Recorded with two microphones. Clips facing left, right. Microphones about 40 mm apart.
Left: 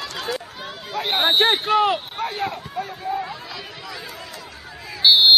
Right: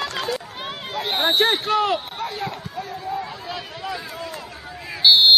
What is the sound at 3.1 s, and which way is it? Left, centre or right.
Chatter, centre.